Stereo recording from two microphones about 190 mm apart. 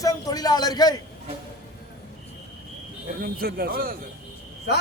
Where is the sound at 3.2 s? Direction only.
50° right (ahead or behind).